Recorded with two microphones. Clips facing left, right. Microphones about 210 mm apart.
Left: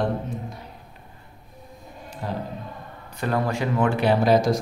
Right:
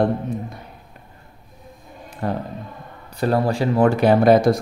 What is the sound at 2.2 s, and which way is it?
Speech, 60° right (ahead or behind).